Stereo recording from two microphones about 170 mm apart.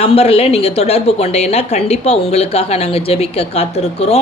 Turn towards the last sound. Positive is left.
turn(degrees=40)  # may be behind; listen again after turning